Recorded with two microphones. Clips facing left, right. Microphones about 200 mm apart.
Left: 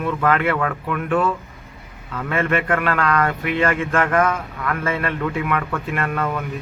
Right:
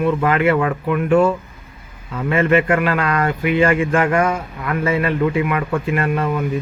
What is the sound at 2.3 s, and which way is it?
Speech, 5° right (ahead or behind).